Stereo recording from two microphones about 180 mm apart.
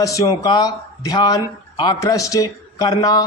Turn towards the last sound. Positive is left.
turn(degrees=20)  # may be behind; listen again after turning